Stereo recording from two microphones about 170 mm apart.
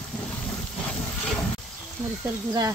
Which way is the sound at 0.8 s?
10° left (ahead or behind).